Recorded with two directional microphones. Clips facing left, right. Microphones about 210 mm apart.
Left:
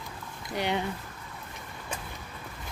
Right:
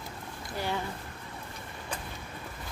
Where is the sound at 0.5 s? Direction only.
20° left (ahead or behind).